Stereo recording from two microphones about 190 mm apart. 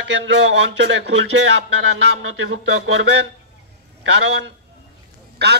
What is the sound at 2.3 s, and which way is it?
Speech, 80° right.